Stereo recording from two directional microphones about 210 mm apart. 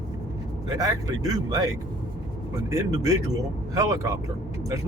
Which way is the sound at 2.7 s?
15° right (ahead or behind).